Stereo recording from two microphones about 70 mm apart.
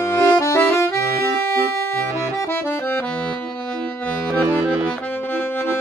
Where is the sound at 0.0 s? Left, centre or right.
Left.